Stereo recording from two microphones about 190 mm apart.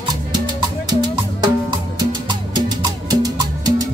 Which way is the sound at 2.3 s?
20° right (ahead or behind).